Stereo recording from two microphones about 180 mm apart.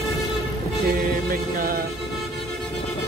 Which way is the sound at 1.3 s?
55° right (ahead or behind).